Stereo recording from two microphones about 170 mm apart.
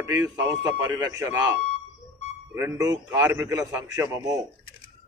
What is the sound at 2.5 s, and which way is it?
A man's voice, 20° right (ahead or behind).